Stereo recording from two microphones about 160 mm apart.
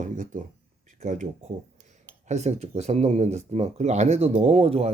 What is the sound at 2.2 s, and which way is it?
Speech, 45° right (ahead or behind).